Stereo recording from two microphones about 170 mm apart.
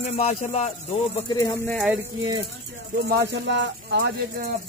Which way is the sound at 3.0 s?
75° right (ahead or behind).